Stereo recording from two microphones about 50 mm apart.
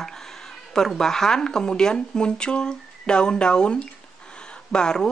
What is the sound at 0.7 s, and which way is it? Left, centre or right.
Speech, centre.